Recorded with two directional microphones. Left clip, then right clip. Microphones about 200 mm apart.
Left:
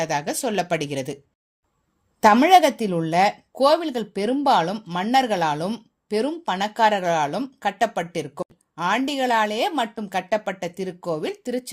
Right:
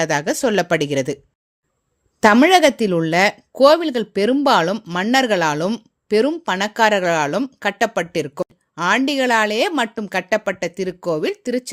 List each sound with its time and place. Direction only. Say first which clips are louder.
0.0 s speech: right 6 dB; 35° right (ahead or behind)
2.2 s speech: right 2 dB; 25° right (ahead or behind)